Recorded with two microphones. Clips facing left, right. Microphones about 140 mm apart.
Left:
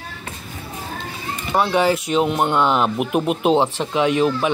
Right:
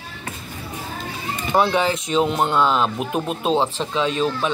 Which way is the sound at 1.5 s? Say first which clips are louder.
Left 1 dB; 5° left (ahead or behind).